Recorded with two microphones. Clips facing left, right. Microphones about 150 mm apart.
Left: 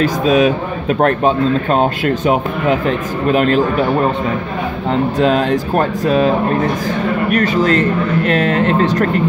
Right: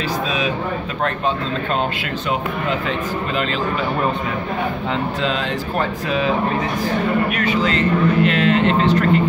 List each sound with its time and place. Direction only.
0.0 s speech: 50° left (ahead or behind)
5.2 s speech: 50° left (ahead or behind)